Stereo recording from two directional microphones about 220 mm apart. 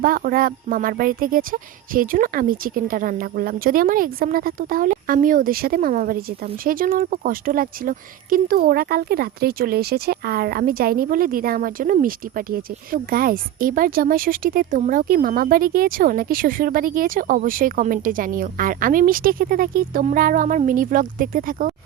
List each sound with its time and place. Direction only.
0.0 s speech: 40° right (ahead or behind)